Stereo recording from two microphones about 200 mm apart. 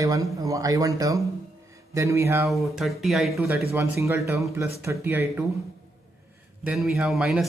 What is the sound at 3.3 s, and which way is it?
Speech, 15° right (ahead or behind).